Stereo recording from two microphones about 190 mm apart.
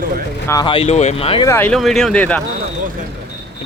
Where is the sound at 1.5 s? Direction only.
10° left (ahead or behind).